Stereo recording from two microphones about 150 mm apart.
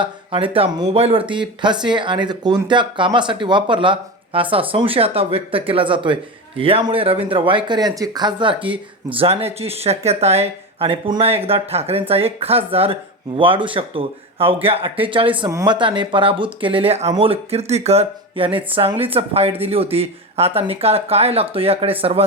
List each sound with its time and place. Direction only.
0.0 s speech: 35° right (ahead or behind)